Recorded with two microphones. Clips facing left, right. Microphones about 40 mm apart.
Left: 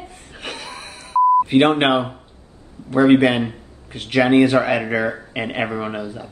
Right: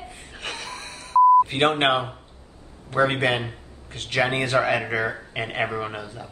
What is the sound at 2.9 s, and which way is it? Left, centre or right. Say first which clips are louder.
Speech: left 7 dB; centre.